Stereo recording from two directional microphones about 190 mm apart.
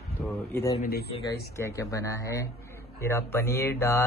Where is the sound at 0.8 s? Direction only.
55° left (ahead or behind).